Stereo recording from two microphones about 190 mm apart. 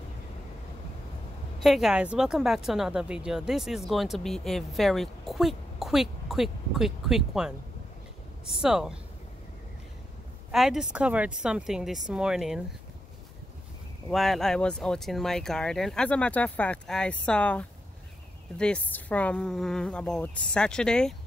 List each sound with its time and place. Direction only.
1.6 s speech: centre (ahead or behind)
8.5 s speech: 5° right (ahead or behind)
10.5 s speech: centre (ahead or behind)
14.1 s speech: centre (ahead or behind)